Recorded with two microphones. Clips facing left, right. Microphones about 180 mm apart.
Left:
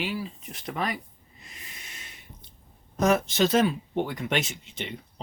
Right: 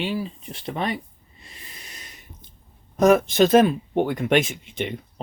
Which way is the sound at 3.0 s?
55° right (ahead or behind).